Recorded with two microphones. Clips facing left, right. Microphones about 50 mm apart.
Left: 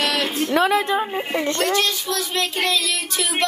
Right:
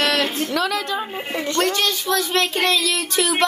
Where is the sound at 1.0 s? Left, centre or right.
Centre.